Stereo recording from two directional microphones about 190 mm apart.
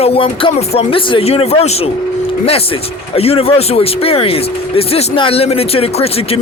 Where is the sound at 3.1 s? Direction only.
30° left (ahead or behind).